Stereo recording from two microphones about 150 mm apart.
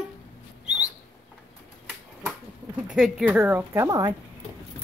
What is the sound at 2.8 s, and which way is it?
Speech, 5° right (ahead or behind).